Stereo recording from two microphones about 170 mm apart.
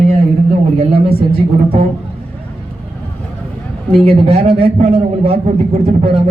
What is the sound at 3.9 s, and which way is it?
A man's voice, 35° right (ahead or behind).